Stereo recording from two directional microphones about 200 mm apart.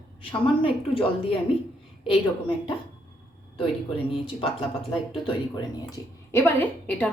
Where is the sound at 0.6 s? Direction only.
25° left (ahead or behind).